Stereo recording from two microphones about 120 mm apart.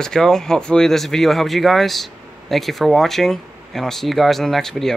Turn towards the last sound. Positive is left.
turn(degrees=5)  # may be behind; listen again after turning